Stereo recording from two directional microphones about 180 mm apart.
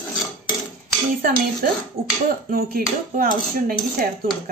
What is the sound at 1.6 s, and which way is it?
Speech, 50° right (ahead or behind).